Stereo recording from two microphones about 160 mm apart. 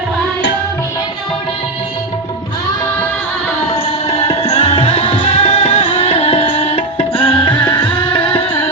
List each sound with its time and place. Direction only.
4.1 s music: 40° left (ahead or behind)